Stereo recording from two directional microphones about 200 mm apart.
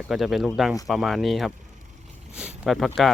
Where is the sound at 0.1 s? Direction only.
Centre (ahead or behind).